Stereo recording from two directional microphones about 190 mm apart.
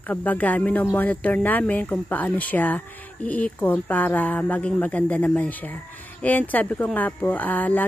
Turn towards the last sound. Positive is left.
turn(degrees=10)  # may be behind; listen again after turning